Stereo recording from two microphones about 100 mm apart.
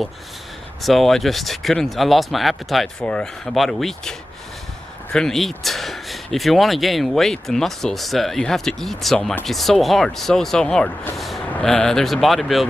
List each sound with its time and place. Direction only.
0.8 s speech: centre (ahead or behind)
5.1 s speech: 5° left (ahead or behind)